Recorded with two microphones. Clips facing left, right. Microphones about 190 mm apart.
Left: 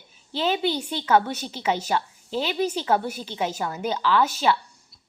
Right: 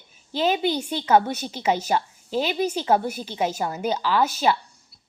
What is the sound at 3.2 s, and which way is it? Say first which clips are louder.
A woman's voice: right 2 dB; 40° right (ahead or behind).